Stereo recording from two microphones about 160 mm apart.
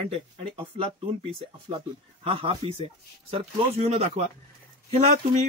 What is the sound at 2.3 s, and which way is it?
A man's voice, 35° right (ahead or behind).